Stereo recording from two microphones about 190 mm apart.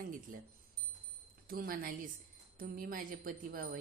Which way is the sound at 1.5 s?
50° right (ahead or behind).